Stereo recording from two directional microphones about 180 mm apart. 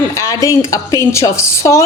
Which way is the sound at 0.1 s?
20° left (ahead or behind).